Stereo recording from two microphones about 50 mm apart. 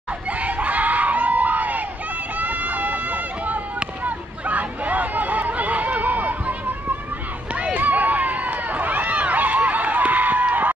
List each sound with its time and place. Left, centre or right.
0.3 s screaming: right
2.3 s run: right
4.0 s a sound: right
7.5 s run: right